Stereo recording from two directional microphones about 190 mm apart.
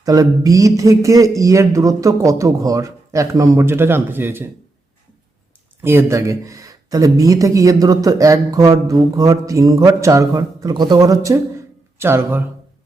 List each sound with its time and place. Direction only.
0.0 s speech: 20° right (ahead or behind)
5.8 s speech: 10° right (ahead or behind)